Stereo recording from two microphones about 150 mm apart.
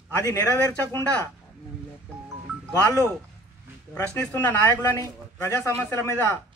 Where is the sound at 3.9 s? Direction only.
15° left (ahead or behind).